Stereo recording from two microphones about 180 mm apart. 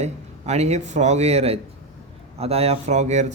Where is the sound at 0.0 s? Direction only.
40° right (ahead or behind).